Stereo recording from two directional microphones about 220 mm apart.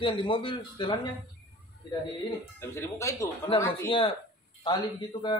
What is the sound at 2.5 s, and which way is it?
A man's voice, 10° left (ahead or behind).